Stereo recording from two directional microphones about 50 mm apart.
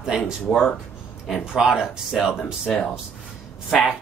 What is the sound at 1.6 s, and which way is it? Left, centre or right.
Speech, centre.